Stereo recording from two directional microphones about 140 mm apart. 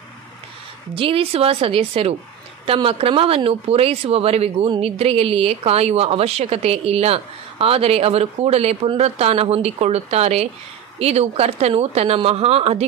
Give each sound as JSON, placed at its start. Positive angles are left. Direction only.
{"t": 0.9, "sound": "speech", "side_deg": -40}